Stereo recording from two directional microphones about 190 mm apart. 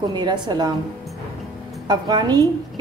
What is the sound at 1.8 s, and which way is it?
Speech, 20° right (ahead or behind).